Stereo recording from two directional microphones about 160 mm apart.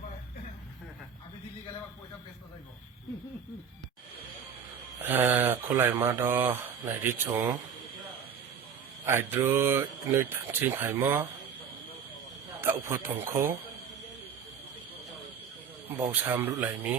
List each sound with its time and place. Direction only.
5.0 s speech: 10° right (ahead or behind)
9.0 s speech: 15° right (ahead or behind)
12.6 s speech: 15° right (ahead or behind)
15.9 s speech: 15° right (ahead or behind)